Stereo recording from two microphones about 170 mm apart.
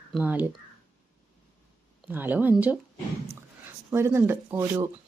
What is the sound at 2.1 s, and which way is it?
Speech, 10° right (ahead or behind).